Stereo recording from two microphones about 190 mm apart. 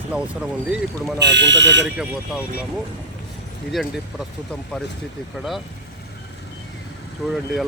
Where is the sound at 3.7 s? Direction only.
Centre (ahead or behind).